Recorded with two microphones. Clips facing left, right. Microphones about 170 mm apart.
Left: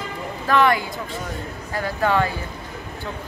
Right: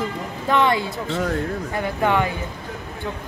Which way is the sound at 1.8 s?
20° right (ahead or behind).